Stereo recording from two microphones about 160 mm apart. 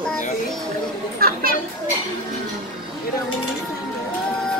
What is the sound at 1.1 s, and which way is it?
Speech, 70° right (ahead or behind).